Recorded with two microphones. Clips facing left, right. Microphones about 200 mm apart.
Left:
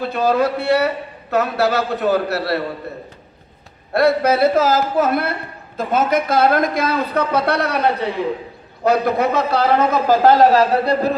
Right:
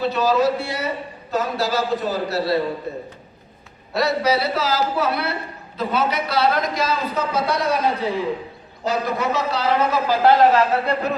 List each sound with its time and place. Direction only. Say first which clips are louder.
0.0 s a man's voice: left 1 dB; 55° left (ahead or behind)
3.9 s a man's voice: left 5 dB; 55° left (ahead or behind); by 11.1 s 35° left (ahead or behind)